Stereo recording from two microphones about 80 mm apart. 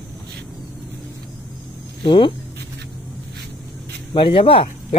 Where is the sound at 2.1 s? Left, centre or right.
Left.